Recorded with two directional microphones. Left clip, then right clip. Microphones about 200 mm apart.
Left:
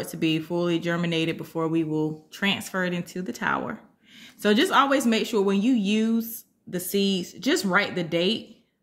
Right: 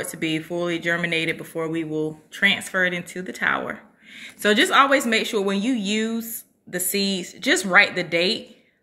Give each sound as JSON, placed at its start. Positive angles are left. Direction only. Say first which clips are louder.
{"t": 0.2, "sound": "speech", "louder": "even", "side_deg": 75}
{"t": 4.4, "sound": "speech", "louder": "right 4 dB", "side_deg": 70}